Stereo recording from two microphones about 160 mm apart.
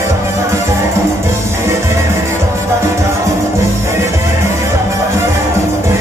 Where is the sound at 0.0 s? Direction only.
15° right (ahead or behind).